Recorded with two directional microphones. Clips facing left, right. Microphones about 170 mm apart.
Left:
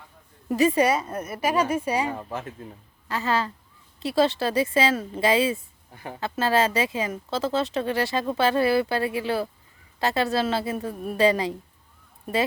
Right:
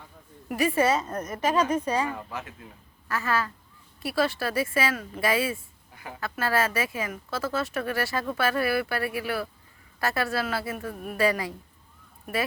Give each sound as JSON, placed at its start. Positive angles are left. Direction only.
{"t": 0.4, "sound": "a woman's voice", "side_deg": 20}
{"t": 2.0, "sound": "speech", "side_deg": 30}
{"t": 3.1, "sound": "speech", "side_deg": 20}
{"t": 5.9, "sound": "speech", "side_deg": 35}